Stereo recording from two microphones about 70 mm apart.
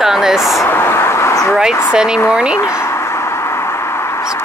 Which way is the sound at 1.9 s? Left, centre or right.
Centre.